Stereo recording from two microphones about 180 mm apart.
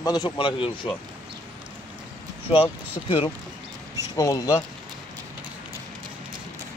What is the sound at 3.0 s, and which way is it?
Speech, 30° left (ahead or behind).